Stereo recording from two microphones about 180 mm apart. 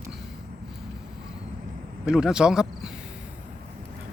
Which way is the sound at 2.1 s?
5° right (ahead or behind).